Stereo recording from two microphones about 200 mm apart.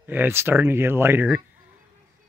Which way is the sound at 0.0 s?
10° right (ahead or behind).